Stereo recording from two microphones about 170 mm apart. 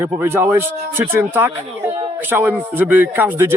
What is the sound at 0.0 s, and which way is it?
Speech, 15° right (ahead or behind).